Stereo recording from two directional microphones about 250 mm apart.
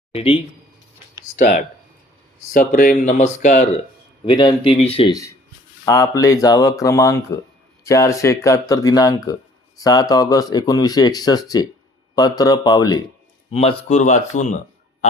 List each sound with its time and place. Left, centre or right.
0.1 s speech: left
4.3 s speech: centre